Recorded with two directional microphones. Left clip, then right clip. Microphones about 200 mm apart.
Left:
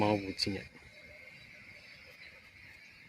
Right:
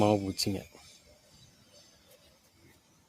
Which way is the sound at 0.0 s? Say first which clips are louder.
Right 4 dB; 70° right (ahead or behind).